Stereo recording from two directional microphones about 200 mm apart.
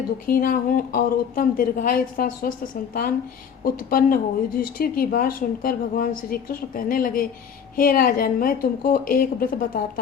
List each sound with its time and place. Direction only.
0.3 s speech: 45° left (ahead or behind)